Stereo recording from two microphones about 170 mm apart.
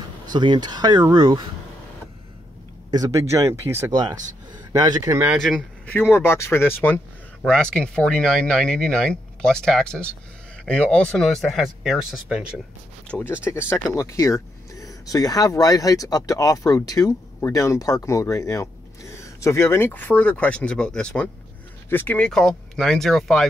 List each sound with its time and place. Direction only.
0.3 s speech: 25° right (ahead or behind)
2.9 s speech: 20° right (ahead or behind)
5.3 s speech: centre (ahead or behind)
5.9 s speech: 15° left (ahead or behind); by 12.4 s 5° right (ahead or behind)
13.1 s speech: 10° left (ahead or behind)